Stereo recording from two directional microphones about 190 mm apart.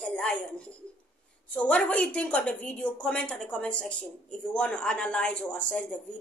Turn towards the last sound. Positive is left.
turn(degrees=5)  # may be behind; listen again after turning